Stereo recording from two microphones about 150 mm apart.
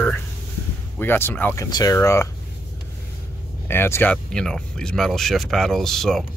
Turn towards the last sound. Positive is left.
turn(degrees=0)  # may be behind; listen again after turning